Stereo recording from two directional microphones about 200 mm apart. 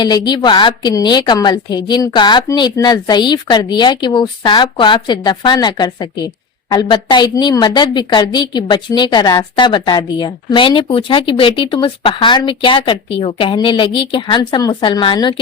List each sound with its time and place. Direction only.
0.0 s a woman's voice: 20° left (ahead or behind)